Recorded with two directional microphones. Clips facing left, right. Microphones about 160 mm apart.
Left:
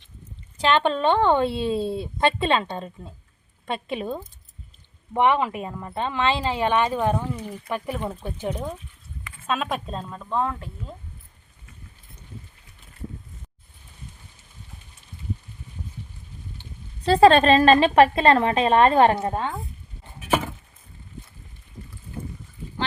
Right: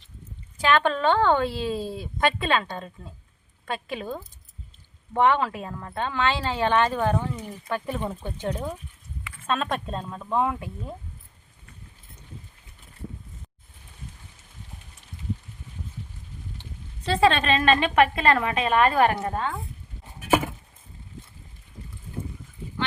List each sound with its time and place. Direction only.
0.6 s speech: 20° left (ahead or behind); by 10.9 s 15° right (ahead or behind)
17.1 s a woman's voice: 40° left (ahead or behind); by 19.5 s 20° left (ahead or behind)
20.2 s a sound: 5° right (ahead or behind)